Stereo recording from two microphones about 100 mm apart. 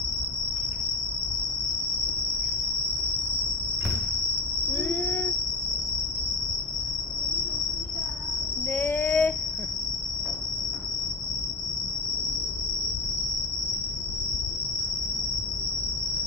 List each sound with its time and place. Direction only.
4.7 s cricket: 20° left (ahead or behind)
8.7 s child singing: 15° left (ahead or behind)